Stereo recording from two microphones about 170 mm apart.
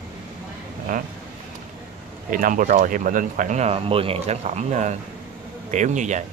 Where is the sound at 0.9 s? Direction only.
50° right (ahead or behind).